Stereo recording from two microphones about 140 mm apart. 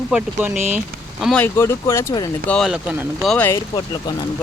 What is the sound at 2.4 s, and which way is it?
Speech, 5° left (ahead or behind).